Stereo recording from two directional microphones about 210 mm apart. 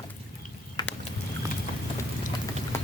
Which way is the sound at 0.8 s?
20° left (ahead or behind).